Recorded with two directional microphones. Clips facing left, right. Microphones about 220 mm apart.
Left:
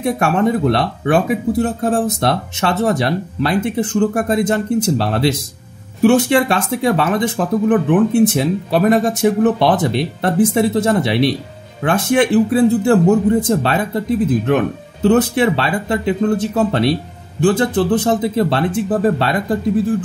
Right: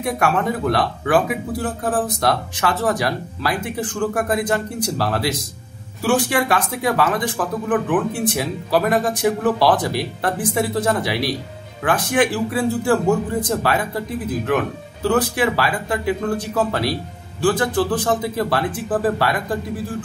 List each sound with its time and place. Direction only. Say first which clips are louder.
0.0 s speech: left 5 dB; 25° left (ahead or behind)